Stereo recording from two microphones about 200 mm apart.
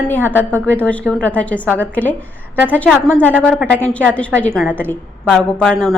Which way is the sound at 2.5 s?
10° right (ahead or behind).